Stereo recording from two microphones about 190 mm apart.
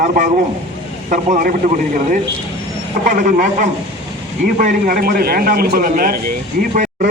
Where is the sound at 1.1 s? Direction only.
45° right (ahead or behind).